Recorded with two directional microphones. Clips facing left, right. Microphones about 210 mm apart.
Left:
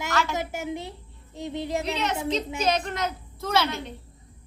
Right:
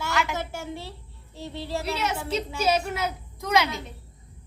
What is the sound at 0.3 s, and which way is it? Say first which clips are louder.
A child's voice: left 3 dB; 15° left (ahead or behind).